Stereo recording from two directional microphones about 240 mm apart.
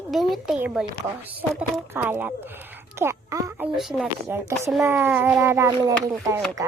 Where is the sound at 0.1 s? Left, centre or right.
Centre.